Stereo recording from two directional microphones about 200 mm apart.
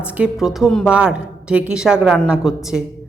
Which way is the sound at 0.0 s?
5° right (ahead or behind).